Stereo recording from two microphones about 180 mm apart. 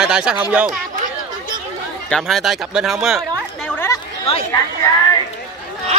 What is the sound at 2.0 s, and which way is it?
Speech, 5° left (ahead or behind).